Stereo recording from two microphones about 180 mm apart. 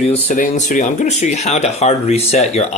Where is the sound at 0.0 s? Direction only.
35° left (ahead or behind).